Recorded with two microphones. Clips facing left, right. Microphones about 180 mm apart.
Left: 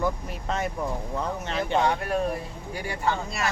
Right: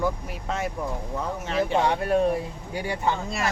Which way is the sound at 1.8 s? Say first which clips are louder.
Right 1 dB; 30° right (ahead or behind).